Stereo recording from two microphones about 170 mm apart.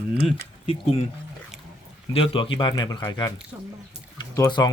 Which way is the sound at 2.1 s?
30° left (ahead or behind).